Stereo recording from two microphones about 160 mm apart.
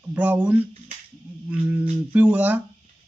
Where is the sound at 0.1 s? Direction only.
10° right (ahead or behind).